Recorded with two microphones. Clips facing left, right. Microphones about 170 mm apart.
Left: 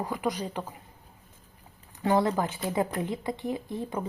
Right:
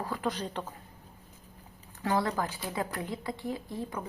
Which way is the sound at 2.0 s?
20° left (ahead or behind).